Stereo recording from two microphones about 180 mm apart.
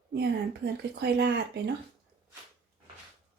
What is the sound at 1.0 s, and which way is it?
Speech, 65° right (ahead or behind).